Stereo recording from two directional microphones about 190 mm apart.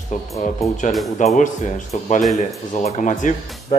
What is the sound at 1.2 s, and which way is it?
Speech, 40° left (ahead or behind).